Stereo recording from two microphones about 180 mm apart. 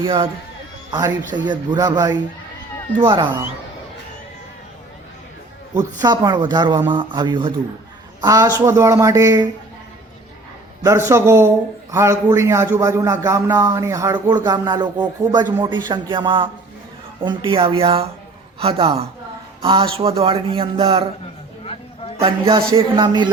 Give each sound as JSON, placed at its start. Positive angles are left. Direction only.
{"t": 0.0, "sound": "speech", "side_deg": -30}
{"t": 5.7, "sound": "a man's voice", "side_deg": -20}
{"t": 10.8, "sound": "a man's voice", "side_deg": -15}
{"t": 22.2, "sound": "speech", "side_deg": -30}